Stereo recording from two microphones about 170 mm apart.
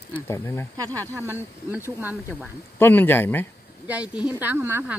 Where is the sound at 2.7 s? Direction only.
10° left (ahead or behind).